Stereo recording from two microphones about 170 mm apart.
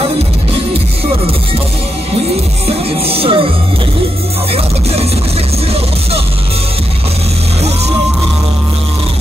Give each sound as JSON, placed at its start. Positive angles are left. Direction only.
{"t": 3.1, "sound": "music", "side_deg": -35}